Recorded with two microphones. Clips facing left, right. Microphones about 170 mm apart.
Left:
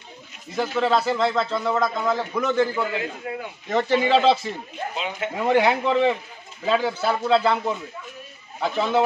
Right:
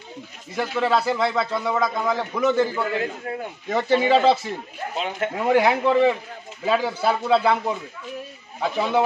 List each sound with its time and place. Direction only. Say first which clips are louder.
0.6 s a man's voice: even; 5° right (ahead or behind)
4.9 s speech: right 4 dB; 50° right (ahead or behind)
5.5 s a man's voice: right 1 dB; 5° right (ahead or behind)